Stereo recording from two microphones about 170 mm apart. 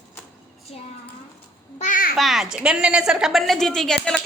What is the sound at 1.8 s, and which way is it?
Babbling, 50° left (ahead or behind).